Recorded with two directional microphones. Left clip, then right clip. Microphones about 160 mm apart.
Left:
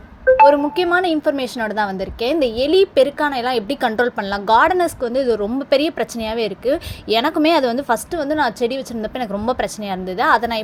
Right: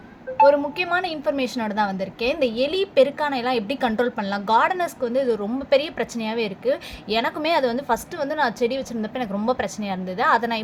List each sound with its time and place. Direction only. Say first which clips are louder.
0.4 s a woman's voice: left 5 dB; 35° left (ahead or behind)